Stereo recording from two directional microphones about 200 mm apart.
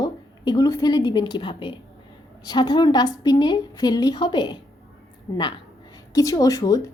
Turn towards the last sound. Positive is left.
turn(degrees=15)  # may be behind; listen again after turning